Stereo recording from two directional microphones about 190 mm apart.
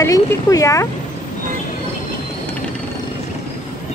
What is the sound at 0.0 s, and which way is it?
Speech, 15° left (ahead or behind).